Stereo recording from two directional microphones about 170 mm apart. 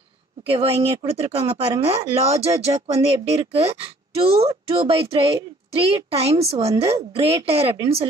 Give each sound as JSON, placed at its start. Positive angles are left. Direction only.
{"t": 0.5, "sound": "speech", "side_deg": -35}